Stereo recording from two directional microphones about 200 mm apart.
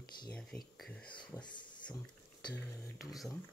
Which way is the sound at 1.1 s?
25° left (ahead or behind).